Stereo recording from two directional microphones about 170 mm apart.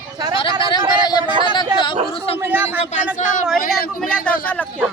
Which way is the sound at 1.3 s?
30° right (ahead or behind).